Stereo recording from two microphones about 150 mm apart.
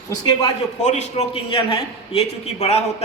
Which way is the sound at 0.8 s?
50° left (ahead or behind).